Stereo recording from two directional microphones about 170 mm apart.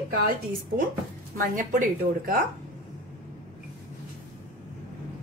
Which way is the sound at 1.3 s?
50° right (ahead or behind).